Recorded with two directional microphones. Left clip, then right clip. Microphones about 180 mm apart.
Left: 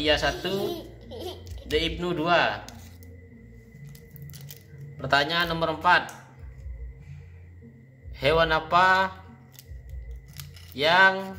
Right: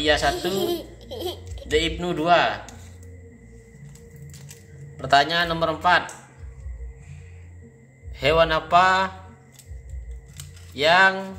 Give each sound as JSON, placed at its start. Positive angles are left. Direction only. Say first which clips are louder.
{"t": 0.0, "sound": "speech", "louder": "right 3 dB", "side_deg": 0}
{"t": 0.6, "sound": "baby laughter", "louder": "right 5 dB", "side_deg": -25}
{"t": 1.7, "sound": "speech", "louder": "right 4 dB", "side_deg": 0}
{"t": 4.9, "sound": "speech", "louder": "right 5 dB", "side_deg": 0}
{"t": 8.2, "sound": "speech", "louder": "right 3 dB", "side_deg": 0}
{"t": 10.7, "sound": "speech", "louder": "right 2 dB", "side_deg": 0}